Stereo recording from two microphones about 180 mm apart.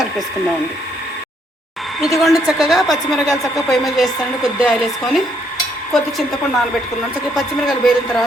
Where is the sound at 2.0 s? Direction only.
Centre (ahead or behind).